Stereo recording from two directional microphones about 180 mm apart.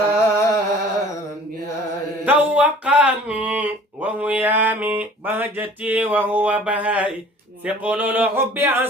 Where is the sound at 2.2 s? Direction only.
10° right (ahead or behind).